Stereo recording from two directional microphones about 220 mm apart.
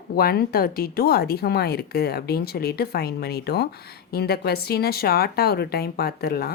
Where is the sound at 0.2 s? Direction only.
45° left (ahead or behind).